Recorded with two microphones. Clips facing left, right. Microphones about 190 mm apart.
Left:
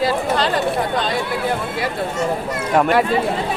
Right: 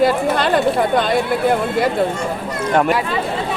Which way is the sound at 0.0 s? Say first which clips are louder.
Right 3 dB; 55° right (ahead or behind).